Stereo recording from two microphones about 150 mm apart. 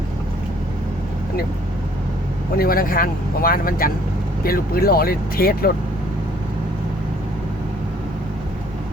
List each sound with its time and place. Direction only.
2.6 s speech: 75° left (ahead or behind); by 5.7 s 90° left